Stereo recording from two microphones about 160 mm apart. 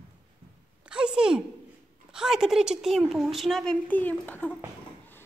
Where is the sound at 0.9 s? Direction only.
5° right (ahead or behind).